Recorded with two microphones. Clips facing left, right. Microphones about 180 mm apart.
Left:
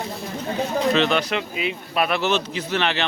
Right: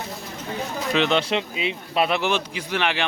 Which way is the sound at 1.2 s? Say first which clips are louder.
Even; 25° right (ahead or behind).